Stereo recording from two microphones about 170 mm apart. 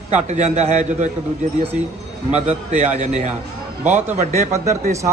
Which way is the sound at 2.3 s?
40° right (ahead or behind).